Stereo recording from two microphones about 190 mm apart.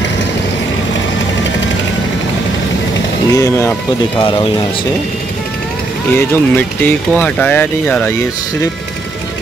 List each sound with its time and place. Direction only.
3.3 s speech: 15° left (ahead or behind)
6.1 s speech: 10° left (ahead or behind)